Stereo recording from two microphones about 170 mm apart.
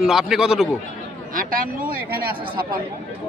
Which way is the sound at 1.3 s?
55° right (ahead or behind).